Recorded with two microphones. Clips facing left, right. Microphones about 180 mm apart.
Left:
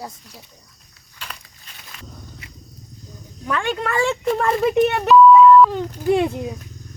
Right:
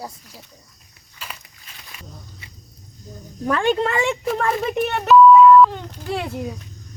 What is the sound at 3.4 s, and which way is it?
Speech, 35° right (ahead or behind).